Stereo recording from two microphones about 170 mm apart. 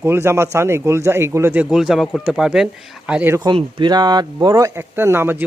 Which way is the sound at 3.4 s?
25° right (ahead or behind).